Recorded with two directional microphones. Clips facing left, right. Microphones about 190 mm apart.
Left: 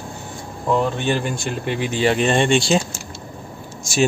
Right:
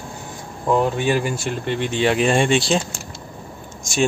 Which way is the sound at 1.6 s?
5° left (ahead or behind).